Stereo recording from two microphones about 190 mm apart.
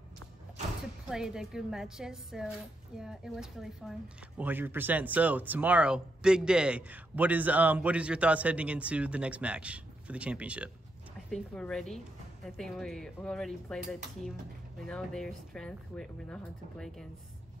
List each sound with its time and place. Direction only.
1.1 s speech: 5° right (ahead or behind)